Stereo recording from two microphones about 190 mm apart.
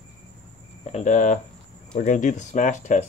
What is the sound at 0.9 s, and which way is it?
Speech, 40° left (ahead or behind).